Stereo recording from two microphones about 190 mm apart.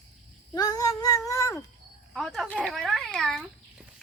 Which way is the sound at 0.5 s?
20° left (ahead or behind).